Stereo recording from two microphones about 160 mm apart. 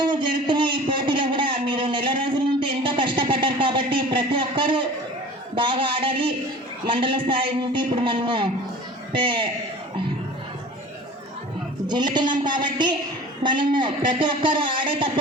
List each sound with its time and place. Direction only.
0.0 s a sound: 30° right (ahead or behind)
5.5 s a man's voice: 30° right (ahead or behind)
11.9 s a man's voice: 25° right (ahead or behind)